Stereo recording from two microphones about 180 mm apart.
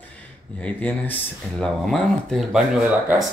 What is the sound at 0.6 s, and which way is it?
Speech, 5° left (ahead or behind).